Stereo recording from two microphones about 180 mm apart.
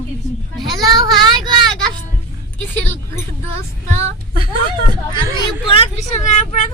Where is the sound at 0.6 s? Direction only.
20° right (ahead or behind).